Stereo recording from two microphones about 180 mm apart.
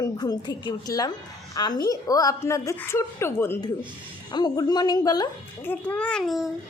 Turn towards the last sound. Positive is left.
turn(degrees=0)  # may be behind; listen again after turning